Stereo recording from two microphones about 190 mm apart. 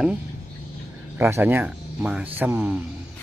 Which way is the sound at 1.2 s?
10° right (ahead or behind).